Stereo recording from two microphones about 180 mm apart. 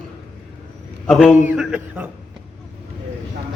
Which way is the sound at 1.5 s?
10° right (ahead or behind).